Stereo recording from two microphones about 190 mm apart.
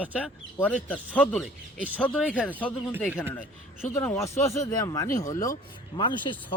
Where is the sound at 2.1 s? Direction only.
5° right (ahead or behind).